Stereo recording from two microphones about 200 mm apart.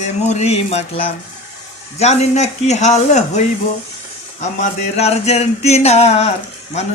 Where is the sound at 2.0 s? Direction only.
35° left (ahead or behind).